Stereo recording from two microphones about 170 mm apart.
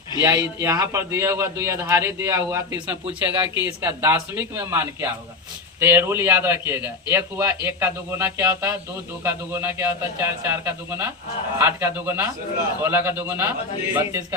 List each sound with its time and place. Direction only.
0.2 s a man's voice: 15° right (ahead or behind)